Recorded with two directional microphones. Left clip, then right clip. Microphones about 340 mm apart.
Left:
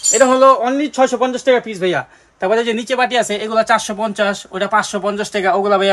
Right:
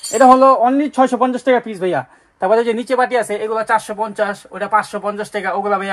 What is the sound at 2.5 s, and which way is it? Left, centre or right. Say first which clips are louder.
Speech: right 1 dB; centre.